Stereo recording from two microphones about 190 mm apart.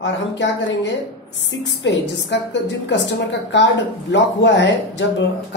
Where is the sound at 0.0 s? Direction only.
70° left (ahead or behind).